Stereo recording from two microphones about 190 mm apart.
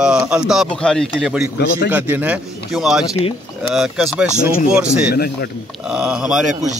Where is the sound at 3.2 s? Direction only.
30° left (ahead or behind).